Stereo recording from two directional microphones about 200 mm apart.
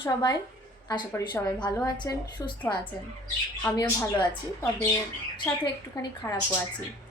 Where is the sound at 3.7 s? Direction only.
5° left (ahead or behind).